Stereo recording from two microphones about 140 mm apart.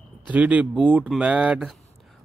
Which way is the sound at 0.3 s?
10° right (ahead or behind).